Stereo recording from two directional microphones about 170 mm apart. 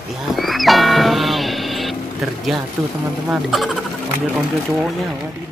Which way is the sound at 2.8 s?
5° right (ahead or behind).